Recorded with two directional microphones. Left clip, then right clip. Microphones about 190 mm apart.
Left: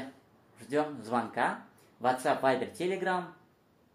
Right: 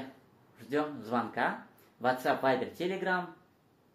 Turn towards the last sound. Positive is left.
turn(degrees=10)  # may be behind; listen again after turning